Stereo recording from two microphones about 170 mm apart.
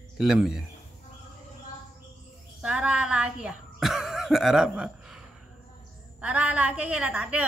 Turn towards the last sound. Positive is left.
turn(degrees=-5)  # may be behind; listen again after turning